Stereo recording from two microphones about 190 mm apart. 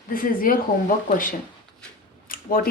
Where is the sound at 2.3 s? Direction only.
50° left (ahead or behind).